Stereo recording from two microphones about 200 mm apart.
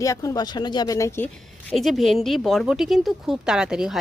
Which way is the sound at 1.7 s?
Centre (ahead or behind).